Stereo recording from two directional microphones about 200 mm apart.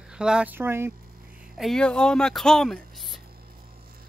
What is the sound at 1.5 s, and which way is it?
Speech, centre (ahead or behind).